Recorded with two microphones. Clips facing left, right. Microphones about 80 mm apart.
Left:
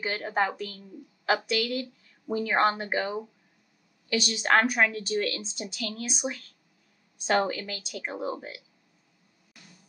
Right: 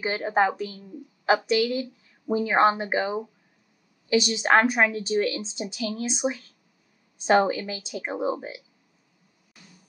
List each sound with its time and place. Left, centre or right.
0.0 s a woman's voice: centre